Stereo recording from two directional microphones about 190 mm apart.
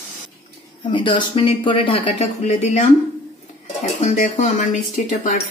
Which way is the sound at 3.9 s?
40° left (ahead or behind).